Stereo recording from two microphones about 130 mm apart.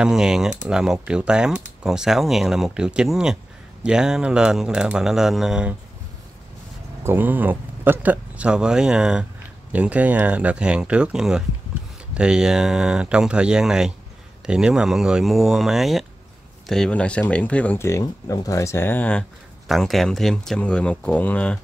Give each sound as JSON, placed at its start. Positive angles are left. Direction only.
{"t": 0.0, "sound": "speech", "side_deg": -5}
{"t": 7.0, "sound": "speech", "side_deg": -15}
{"t": 17.8, "sound": "speech", "side_deg": 25}